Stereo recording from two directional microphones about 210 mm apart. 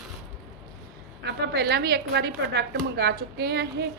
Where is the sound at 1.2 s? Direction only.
50° right (ahead or behind).